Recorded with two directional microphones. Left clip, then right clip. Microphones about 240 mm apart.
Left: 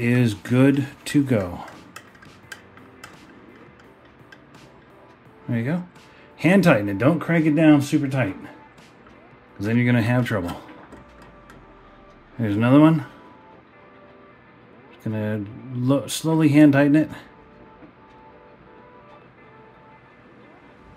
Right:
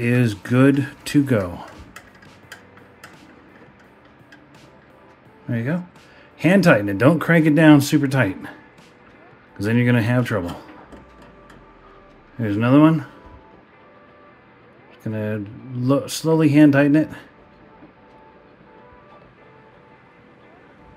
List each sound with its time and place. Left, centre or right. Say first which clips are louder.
0.0 s speech: right 1 dB; centre
5.5 s speech: right 1 dB; centre
7.1 s speech: right 4 dB; right
9.6 s speech: right 2 dB; centre
12.4 s speech: right 1 dB; centre
15.0 s speech: right 1 dB; centre